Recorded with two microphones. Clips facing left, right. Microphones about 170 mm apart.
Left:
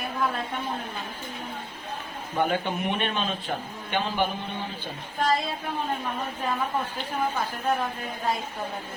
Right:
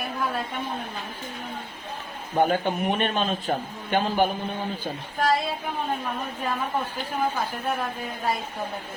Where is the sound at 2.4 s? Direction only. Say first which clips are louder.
Right 3 dB; 40° right (ahead or behind).